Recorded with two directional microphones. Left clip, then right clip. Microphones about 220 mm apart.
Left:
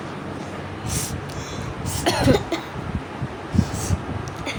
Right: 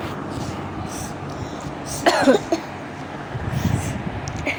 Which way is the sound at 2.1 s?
10° right (ahead or behind).